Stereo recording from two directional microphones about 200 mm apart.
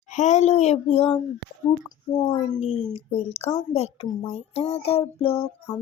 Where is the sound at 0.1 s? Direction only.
35° left (ahead or behind).